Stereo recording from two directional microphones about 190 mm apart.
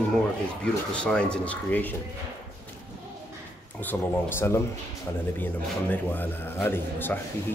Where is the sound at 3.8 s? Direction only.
10° left (ahead or behind).